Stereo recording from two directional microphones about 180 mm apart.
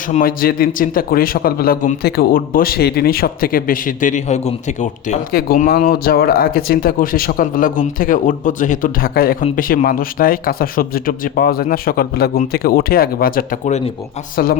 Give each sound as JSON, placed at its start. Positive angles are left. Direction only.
{"t": 0.1, "sound": "speech", "side_deg": 50}
{"t": 5.3, "sound": "speech", "side_deg": 55}